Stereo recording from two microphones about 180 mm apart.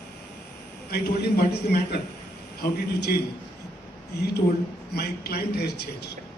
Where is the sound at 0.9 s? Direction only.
65° left (ahead or behind).